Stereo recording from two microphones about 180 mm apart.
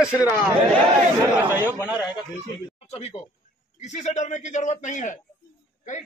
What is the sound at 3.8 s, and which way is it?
A man's voice, 40° left (ahead or behind).